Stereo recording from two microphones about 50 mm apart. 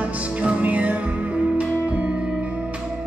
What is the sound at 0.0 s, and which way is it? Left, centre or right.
Music, right.